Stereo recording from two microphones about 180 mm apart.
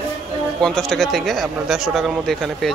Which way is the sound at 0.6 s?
5° left (ahead or behind).